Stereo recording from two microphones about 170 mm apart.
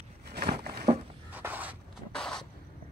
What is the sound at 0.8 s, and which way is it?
Writing, 10° right (ahead or behind).